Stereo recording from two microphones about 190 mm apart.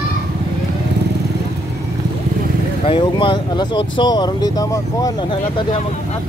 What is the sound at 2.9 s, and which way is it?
Speech, 25° left (ahead or behind).